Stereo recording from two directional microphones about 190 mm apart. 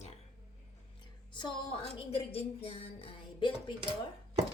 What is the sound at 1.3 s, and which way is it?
A woman's voice, 25° left (ahead or behind).